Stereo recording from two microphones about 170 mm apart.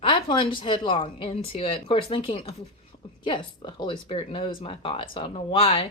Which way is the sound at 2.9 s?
35° left (ahead or behind).